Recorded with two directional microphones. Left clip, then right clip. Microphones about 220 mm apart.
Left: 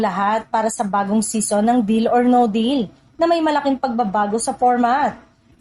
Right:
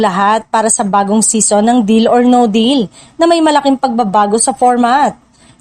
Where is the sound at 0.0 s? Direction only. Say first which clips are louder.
Right 8 dB; 45° right (ahead or behind).